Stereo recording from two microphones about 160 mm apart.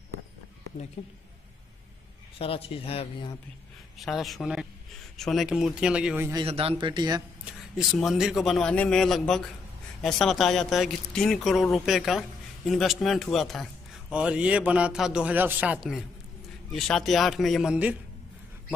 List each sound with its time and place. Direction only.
1.0 s speech: 40° left (ahead or behind)
2.3 s speech: 35° left (ahead or behind)
4.0 s speech: centre (ahead or behind)
6.4 s a man's voice: 35° right (ahead or behind)
7.4 s speech: 5° right (ahead or behind)